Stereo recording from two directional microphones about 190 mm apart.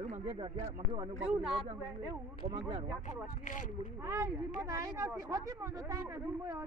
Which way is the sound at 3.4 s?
40° left (ahead or behind).